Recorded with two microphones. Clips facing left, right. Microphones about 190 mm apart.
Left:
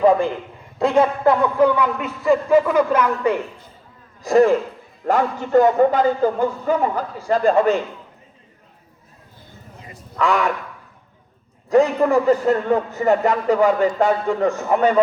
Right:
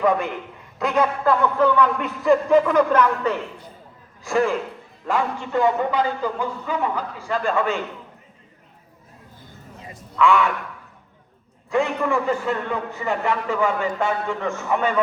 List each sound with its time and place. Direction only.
0.0 s a man's voice: 30° left (ahead or behind); by 3.3 s 10° left (ahead or behind)
4.2 s a man's voice: 40° left (ahead or behind)
10.2 s a man's voice: 40° left (ahead or behind)
11.7 s a man's voice: 40° left (ahead or behind)